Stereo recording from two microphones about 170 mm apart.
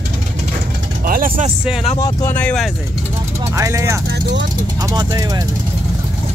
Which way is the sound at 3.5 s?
20° right (ahead or behind).